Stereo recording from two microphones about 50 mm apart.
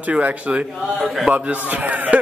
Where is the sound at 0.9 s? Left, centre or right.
Centre.